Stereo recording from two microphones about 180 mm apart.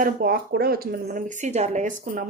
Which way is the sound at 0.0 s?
55° right (ahead or behind).